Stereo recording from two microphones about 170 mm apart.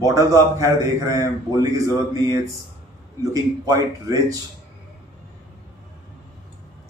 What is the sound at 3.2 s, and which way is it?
Speech, 20° right (ahead or behind).